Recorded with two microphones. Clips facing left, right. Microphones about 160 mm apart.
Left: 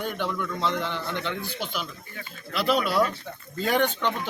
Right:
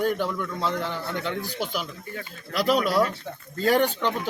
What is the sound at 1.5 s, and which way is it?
Speech, 45° right (ahead or behind).